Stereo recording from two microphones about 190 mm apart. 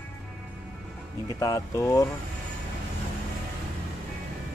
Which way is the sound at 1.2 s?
20° left (ahead or behind).